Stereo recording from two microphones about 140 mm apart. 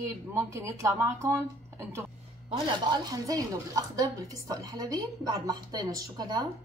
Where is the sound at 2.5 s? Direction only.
30° right (ahead or behind).